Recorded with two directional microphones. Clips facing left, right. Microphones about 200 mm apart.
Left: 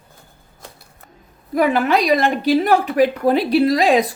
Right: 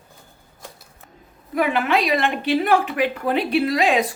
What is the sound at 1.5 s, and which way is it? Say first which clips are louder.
Speech: left 4 dB; 40° left (ahead or behind).